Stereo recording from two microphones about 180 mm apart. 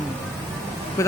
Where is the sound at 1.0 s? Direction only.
15° left (ahead or behind).